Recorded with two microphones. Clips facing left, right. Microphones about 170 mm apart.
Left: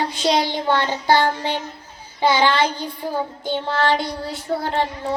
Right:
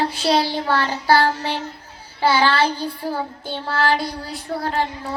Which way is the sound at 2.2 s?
20° left (ahead or behind).